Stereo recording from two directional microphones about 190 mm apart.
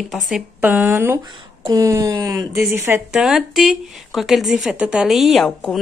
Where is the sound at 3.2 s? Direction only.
Centre (ahead or behind).